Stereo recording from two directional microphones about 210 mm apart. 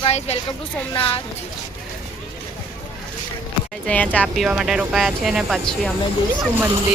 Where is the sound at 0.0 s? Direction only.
30° left (ahead or behind).